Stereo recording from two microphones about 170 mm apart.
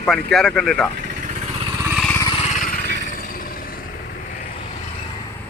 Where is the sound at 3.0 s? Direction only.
55° left (ahead or behind).